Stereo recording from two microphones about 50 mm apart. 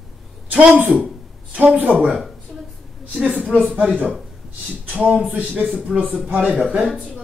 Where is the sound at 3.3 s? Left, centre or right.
Right.